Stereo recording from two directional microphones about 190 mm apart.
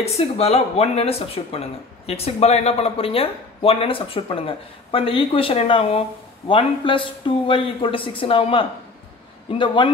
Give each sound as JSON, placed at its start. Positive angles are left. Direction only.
{"t": 0.0, "sound": "speech", "side_deg": 35}